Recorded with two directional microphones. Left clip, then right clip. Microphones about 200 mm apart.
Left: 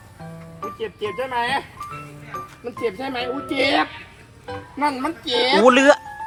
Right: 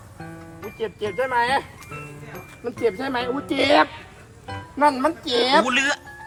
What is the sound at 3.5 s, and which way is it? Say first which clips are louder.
Speech: right 2 dB; 35° right (ahead or behind).